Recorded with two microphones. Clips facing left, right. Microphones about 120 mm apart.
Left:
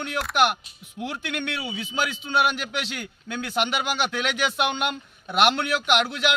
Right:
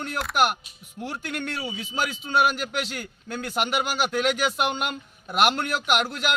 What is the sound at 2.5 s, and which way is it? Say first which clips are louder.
Speech: right 1 dB; 45° right (ahead or behind).